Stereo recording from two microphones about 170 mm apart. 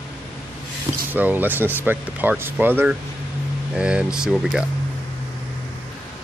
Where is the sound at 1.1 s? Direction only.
10° right (ahead or behind).